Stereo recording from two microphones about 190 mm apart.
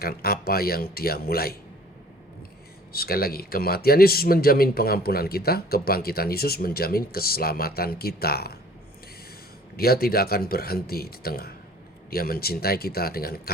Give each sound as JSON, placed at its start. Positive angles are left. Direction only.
{"t": 0.0, "sound": "speech", "side_deg": 55}
{"t": 2.9, "sound": "speech", "side_deg": 55}
{"t": 9.7, "sound": "speech", "side_deg": 55}